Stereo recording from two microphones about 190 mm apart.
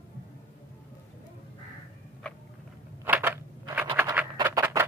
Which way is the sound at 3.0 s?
10° right (ahead or behind).